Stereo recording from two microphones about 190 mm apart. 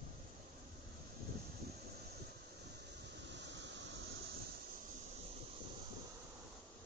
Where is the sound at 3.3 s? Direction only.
65° right (ahead or behind).